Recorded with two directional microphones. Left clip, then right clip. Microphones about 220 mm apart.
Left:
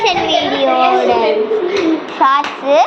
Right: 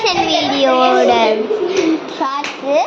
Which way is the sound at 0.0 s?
10° right (ahead or behind).